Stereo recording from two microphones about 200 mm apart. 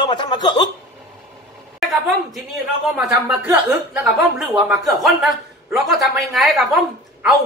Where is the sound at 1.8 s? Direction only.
Centre (ahead or behind).